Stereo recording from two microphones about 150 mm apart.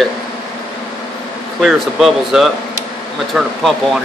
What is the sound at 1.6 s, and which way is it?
Speech, centre (ahead or behind).